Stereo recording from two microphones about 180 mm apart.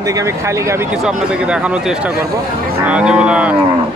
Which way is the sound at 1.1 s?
5° right (ahead or behind).